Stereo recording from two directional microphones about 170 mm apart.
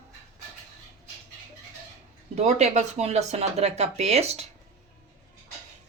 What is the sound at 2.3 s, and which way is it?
Speech, 40° right (ahead or behind).